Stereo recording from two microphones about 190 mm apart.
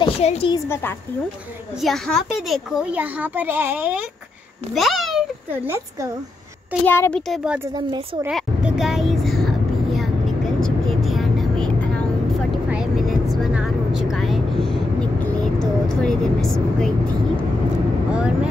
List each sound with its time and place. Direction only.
0.0 s a woman's voice: 30° left (ahead or behind)
1.8 s a child's voice: centre (ahead or behind)
5.5 s a child's voice: 15° right (ahead or behind)
6.9 s speech: 10° left (ahead or behind)
7.7 s a child's voice: 20° right (ahead or behind)
8.3 s a sound: centre (ahead or behind)
10.6 s vehicle: centre (ahead or behind)
18.1 s vehicle: 5° right (ahead or behind)